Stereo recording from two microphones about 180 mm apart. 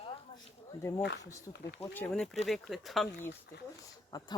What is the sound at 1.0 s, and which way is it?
Speech, 75° left (ahead or behind).